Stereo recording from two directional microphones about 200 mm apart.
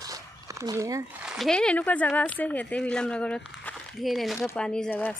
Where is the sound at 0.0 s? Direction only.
15° right (ahead or behind).